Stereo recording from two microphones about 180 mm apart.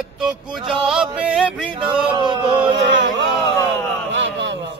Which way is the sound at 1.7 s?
25° right (ahead or behind).